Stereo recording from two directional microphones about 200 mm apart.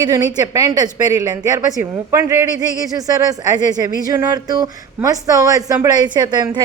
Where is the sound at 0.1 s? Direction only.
20° right (ahead or behind).